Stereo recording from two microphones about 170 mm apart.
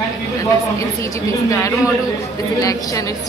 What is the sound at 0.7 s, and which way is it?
A woman's voice, 15° left (ahead or behind).